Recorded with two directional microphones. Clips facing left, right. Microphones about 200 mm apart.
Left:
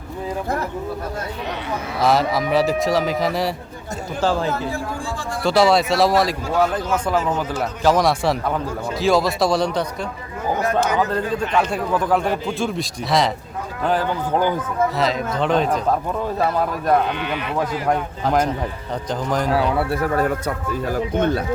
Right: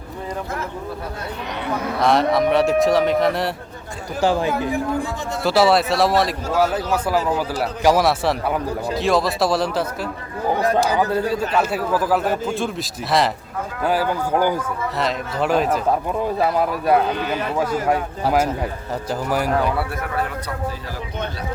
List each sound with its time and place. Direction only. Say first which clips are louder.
2.0 s a man's voice: right 1 dB; centre (ahead or behind)
4.2 s a man's voice: right 2 dB; 15° right (ahead or behind)
5.4 s a man's voice: even; 5° right (ahead or behind)
17.1 s speech: right 2 dB; 40° right (ahead or behind)
17.8 s a man's voice: right 1 dB; 5° right (ahead or behind)
19.9 s speech: left 6 dB; 40° left (ahead or behind)
20.8 s speech: left 9 dB; 50° left (ahead or behind)